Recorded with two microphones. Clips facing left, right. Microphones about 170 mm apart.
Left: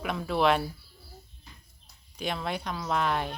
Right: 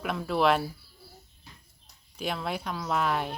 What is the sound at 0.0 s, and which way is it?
Speech, centre (ahead or behind).